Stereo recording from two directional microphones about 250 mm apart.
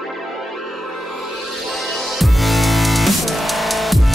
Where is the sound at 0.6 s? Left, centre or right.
Right.